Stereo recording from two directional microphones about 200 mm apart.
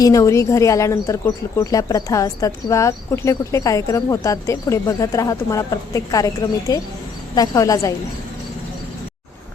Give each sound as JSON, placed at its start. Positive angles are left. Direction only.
{"t": 0.0, "sound": "speech", "side_deg": 15}